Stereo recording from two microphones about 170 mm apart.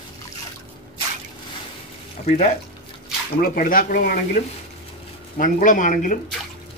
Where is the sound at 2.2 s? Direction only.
40° left (ahead or behind).